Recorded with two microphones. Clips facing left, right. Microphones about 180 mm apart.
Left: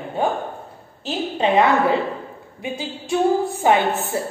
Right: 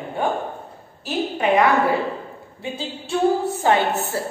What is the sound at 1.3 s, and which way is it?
A woman's voice, 20° left (ahead or behind).